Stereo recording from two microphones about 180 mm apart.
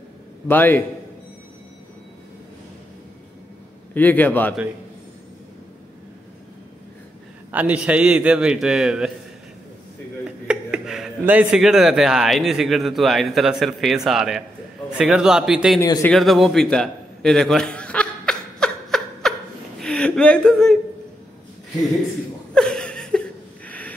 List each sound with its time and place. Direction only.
0.5 s a man's voice: 10° left (ahead or behind)
3.9 s a man's voice: 10° left (ahead or behind)
7.5 s a man's voice: 5° right (ahead or behind)
10.2 s a man's voice: 5° right (ahead or behind)
15.8 s a man's voice: 15° left (ahead or behind)
16.1 s a sound: centre (ahead or behind)
22.5 s a sound: 5° left (ahead or behind)